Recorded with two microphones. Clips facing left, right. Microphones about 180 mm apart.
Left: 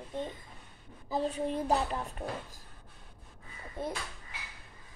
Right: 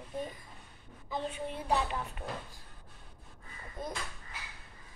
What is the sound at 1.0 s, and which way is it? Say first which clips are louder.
Speech: left 5 dB; 35° left (ahead or behind).